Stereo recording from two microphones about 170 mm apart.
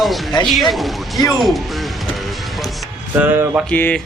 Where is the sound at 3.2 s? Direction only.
10° right (ahead or behind).